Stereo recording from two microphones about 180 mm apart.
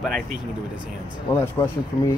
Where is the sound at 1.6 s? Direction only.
25° left (ahead or behind).